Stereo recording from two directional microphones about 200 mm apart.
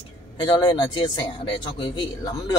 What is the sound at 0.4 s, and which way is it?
Speech, 20° left (ahead or behind).